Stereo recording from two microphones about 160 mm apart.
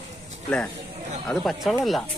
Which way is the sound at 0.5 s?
10° left (ahead or behind).